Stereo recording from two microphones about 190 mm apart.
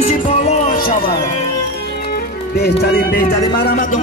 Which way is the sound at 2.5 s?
60° left (ahead or behind).